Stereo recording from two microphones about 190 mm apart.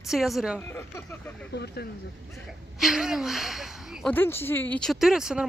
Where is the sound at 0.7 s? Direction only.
15° left (ahead or behind).